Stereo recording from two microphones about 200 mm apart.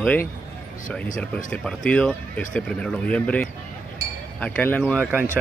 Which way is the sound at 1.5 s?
5° left (ahead or behind).